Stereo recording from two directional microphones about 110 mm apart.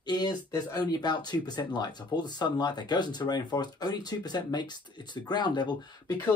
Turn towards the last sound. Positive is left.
turn(degrees=40)  # may be behind; listen again after turning